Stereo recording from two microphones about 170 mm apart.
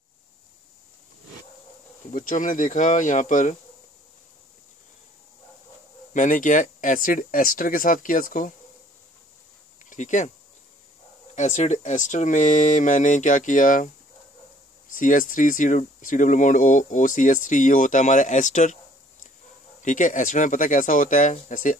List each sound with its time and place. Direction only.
2.1 s speech: 50° left (ahead or behind)
6.1 s speech: 50° left (ahead or behind)
9.8 s speech: 45° left (ahead or behind)
11.3 s speech: 45° left (ahead or behind)
14.9 s speech: 50° left (ahead or behind)
19.8 s speech: 50° left (ahead or behind)